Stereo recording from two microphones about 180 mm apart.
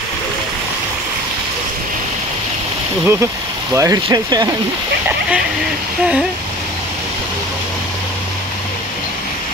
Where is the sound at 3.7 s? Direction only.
20° right (ahead or behind).